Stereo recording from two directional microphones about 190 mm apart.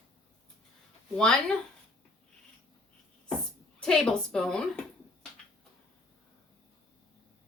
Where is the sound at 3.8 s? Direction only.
Centre (ahead or behind).